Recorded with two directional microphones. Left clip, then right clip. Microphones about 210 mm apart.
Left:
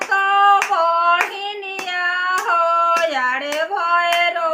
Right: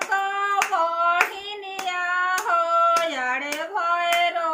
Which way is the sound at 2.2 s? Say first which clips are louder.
Left 4 dB; 15° left (ahead or behind).